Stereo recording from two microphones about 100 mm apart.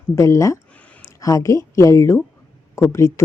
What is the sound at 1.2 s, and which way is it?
Speech, 35° left (ahead or behind).